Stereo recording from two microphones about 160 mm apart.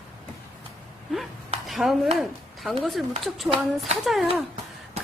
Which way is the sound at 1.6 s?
Centre (ahead or behind).